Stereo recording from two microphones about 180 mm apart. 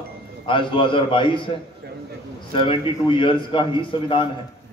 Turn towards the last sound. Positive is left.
turn(degrees=30)  # may be behind; listen again after turning